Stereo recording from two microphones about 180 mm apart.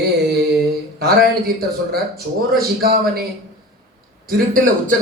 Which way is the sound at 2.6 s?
55° right (ahead or behind).